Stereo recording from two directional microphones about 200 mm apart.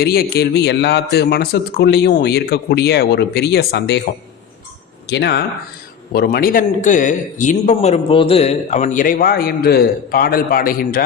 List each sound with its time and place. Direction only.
0.0 s a man's voice: 50° left (ahead or behind)
5.0 s a man's voice: 55° left (ahead or behind)